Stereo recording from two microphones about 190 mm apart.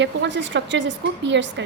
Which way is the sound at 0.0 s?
70° right (ahead or behind).